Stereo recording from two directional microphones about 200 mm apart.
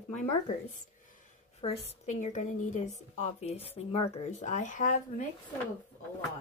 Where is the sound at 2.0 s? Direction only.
35° left (ahead or behind).